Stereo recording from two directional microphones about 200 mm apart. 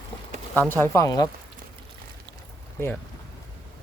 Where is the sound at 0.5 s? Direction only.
10° left (ahead or behind).